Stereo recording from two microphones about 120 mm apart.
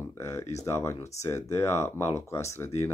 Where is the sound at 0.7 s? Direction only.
25° left (ahead or behind).